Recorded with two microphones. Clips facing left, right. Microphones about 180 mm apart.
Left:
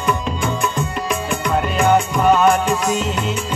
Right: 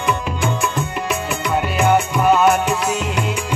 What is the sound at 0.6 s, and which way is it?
Music, 5° right (ahead or behind).